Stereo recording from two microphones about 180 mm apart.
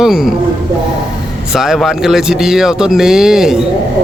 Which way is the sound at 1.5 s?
Centre (ahead or behind).